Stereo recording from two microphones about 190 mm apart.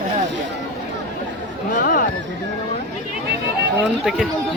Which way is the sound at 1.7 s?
45° left (ahead or behind).